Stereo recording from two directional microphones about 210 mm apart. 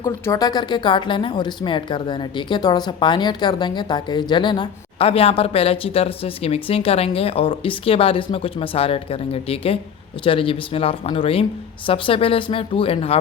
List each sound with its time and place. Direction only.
0.0 s speech: 15° left (ahead or behind)